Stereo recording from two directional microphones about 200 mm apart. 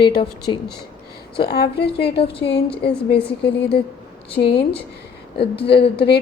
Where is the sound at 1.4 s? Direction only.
55° left (ahead or behind).